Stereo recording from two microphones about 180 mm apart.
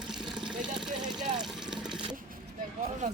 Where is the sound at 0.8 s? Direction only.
5° right (ahead or behind).